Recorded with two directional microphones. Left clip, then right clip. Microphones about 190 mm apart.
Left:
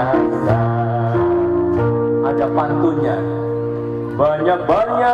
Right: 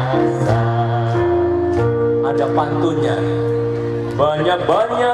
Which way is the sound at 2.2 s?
25° right (ahead or behind).